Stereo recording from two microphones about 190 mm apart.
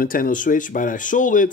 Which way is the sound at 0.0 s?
45° left (ahead or behind).